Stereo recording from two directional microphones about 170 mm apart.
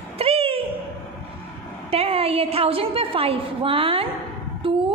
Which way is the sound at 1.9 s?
35° right (ahead or behind).